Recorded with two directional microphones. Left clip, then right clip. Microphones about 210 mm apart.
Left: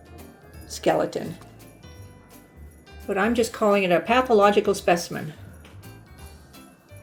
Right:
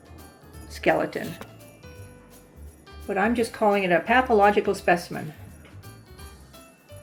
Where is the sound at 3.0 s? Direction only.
10° left (ahead or behind).